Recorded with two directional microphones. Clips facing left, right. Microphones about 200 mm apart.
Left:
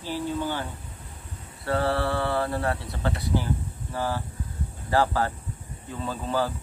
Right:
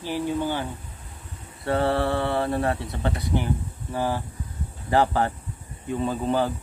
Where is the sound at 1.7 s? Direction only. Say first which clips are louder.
Right 2 dB; 20° right (ahead or behind).